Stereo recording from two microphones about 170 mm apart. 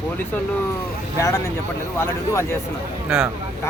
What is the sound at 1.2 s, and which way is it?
A man's voice, 20° left (ahead or behind).